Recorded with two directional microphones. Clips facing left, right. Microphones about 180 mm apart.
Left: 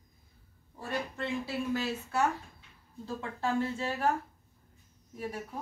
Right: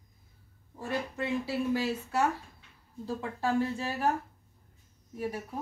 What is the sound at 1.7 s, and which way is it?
Speech, 10° right (ahead or behind).